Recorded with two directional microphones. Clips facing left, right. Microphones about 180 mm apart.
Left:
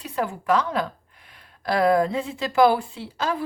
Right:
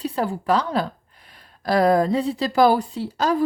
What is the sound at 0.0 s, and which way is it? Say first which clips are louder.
A woman's voice: right 3 dB; 35° right (ahead or behind).